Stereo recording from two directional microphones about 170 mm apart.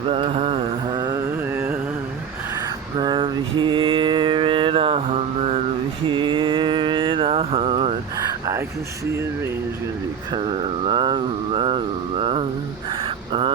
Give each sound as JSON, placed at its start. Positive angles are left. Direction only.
{"t": 0.1, "sound": "mantra", "side_deg": -35}
{"t": 1.5, "sound": "carnatic music", "side_deg": -15}
{"t": 3.0, "sound": "mantra", "side_deg": -25}
{"t": 10.3, "sound": "a sound", "side_deg": -30}